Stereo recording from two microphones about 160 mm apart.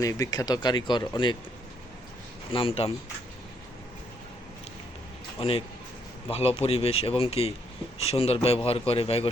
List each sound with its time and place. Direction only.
0.0 s speech: 20° left (ahead or behind)
2.5 s speech: 35° left (ahead or behind)
5.4 s speech: 35° left (ahead or behind)